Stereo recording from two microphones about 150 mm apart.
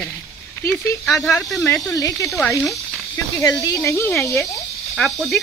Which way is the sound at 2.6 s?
Centre (ahead or behind).